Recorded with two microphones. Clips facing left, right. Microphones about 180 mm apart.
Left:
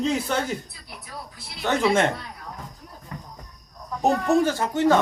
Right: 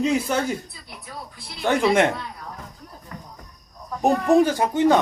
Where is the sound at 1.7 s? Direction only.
15° right (ahead or behind).